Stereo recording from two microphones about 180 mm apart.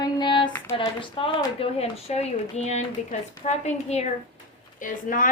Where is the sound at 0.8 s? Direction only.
30° left (ahead or behind).